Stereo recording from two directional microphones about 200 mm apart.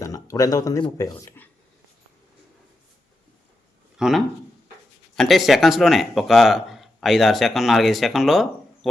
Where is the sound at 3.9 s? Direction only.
Centre (ahead or behind).